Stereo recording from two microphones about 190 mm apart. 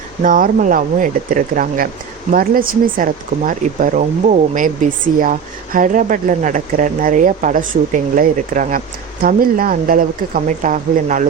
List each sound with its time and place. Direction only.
0.2 s speech: 45° right (ahead or behind)